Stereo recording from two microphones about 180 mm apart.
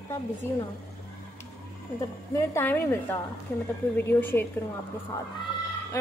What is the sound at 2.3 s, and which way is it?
Speech, 15° left (ahead or behind).